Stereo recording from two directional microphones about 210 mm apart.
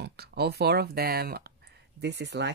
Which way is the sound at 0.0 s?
50° right (ahead or behind).